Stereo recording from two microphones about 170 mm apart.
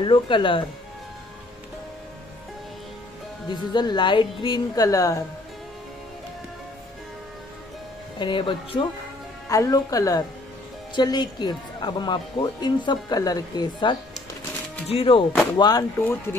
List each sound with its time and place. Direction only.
0.0 s speech: 30° left (ahead or behind)
3.4 s speech: 25° left (ahead or behind)
8.2 s speech: 30° left (ahead or behind)